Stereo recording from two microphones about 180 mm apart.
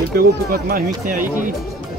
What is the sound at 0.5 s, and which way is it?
Speech, 50° right (ahead or behind).